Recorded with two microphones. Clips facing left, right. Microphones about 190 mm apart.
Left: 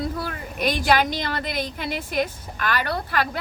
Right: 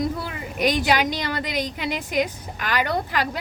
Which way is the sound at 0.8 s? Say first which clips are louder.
Left 1 dB; 45° left (ahead or behind).